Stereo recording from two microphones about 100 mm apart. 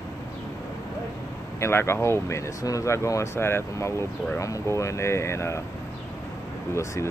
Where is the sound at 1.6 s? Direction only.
25° left (ahead or behind).